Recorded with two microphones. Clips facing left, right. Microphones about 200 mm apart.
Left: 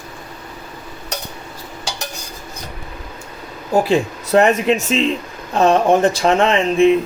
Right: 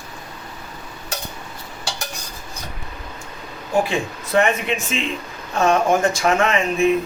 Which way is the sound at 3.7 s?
40° left (ahead or behind).